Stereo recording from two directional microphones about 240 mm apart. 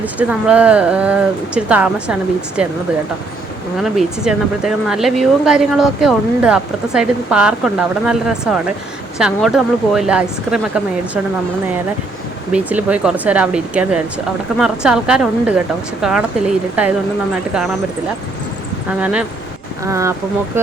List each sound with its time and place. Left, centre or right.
0.0 s speech: centre
3.8 s speech: centre
12.5 s speech: centre
18.9 s speech: centre